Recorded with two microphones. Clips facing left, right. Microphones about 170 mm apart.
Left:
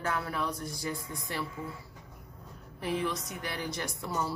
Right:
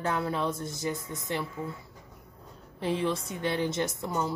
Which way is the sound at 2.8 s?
25° right (ahead or behind).